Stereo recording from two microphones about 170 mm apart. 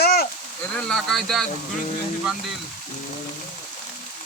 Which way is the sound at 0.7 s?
Centre (ahead or behind).